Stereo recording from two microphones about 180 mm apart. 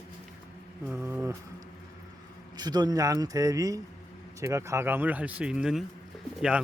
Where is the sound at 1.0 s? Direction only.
10° right (ahead or behind).